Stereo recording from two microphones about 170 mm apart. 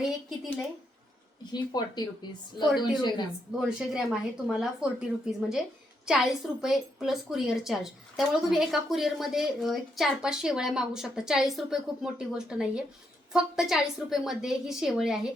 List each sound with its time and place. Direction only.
1.5 s speech: 25° left (ahead or behind)
2.6 s a woman's voice: centre (ahead or behind)
3.0 s speech: 25° left (ahead or behind)
3.6 s a woman's voice: 5° right (ahead or behind)